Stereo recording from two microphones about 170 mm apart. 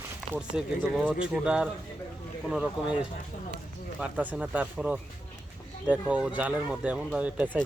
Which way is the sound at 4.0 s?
5° right (ahead or behind).